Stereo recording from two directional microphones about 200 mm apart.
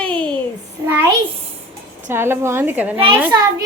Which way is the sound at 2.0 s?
10° right (ahead or behind).